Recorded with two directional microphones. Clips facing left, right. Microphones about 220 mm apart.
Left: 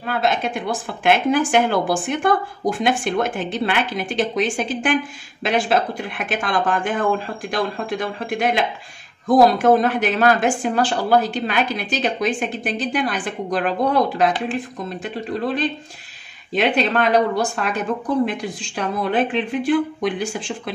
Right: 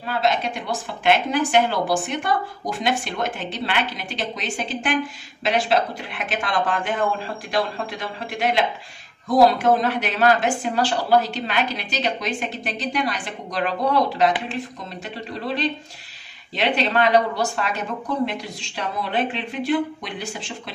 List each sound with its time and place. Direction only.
0.0 s a woman's voice: 50° left (ahead or behind)
16.5 s a woman's voice: 50° left (ahead or behind)